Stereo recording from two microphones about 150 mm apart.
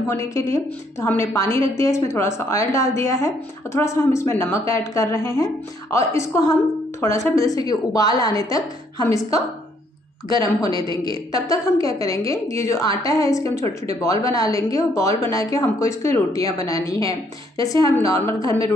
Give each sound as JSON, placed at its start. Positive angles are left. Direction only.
{"t": 0.1, "sound": "a woman's voice", "side_deg": 20}